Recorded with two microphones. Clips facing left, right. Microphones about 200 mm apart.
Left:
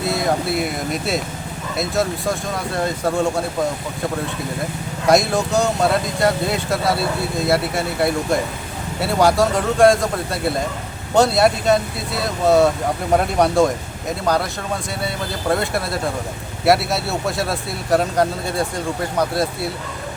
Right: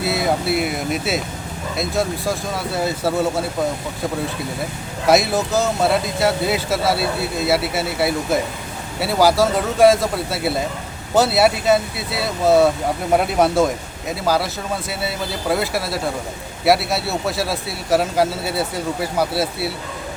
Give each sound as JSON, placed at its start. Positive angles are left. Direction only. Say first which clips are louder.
{"t": 0.0, "sound": "speech", "louder": "even", "side_deg": -5}
{"t": 5.0, "sound": "speech", "louder": "even", "side_deg": -5}
{"t": 15.0, "sound": "speech", "louder": "left 1 dB", "side_deg": -5}